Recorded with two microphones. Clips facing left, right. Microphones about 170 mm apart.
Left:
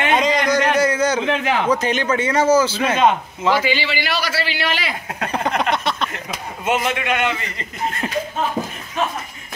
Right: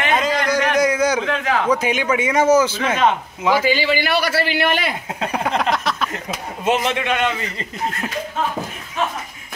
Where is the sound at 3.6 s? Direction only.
45° right (ahead or behind).